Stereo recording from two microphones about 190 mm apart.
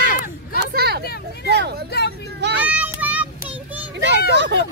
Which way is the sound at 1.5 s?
60° right (ahead or behind).